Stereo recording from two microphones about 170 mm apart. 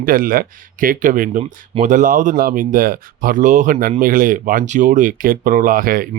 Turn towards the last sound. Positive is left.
turn(degrees=-55)  # may be behind; listen again after turning